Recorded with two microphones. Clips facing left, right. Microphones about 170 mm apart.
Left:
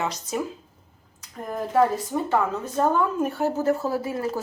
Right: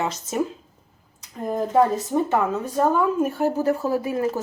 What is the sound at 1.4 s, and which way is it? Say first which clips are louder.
Speech: right 5 dB; 20° right (ahead or behind).